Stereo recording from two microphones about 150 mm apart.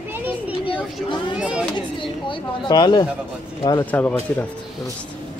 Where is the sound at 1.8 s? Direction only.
30° left (ahead or behind).